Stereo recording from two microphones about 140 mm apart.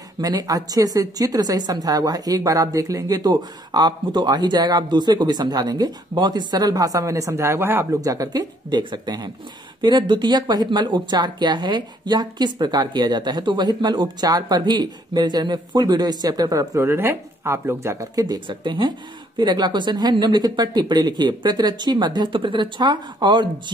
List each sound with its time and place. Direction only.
0.2 s a woman's voice: 25° right (ahead or behind)
18.2 s speech: 30° right (ahead or behind)